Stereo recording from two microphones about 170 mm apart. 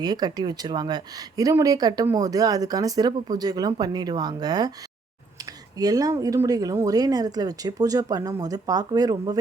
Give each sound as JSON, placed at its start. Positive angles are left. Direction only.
{"t": 0.0, "sound": "speech", "side_deg": -25}
{"t": 5.7, "sound": "speech", "side_deg": -20}